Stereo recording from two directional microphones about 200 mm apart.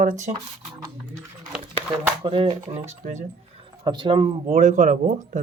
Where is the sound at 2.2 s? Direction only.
25° right (ahead or behind).